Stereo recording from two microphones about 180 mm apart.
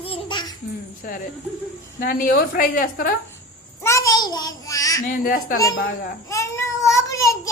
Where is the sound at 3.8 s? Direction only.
15° left (ahead or behind).